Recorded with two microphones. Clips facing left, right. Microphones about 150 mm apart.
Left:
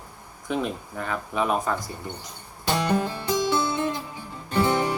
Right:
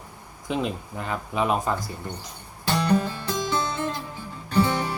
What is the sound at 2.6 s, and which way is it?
Music, 10° left (ahead or behind).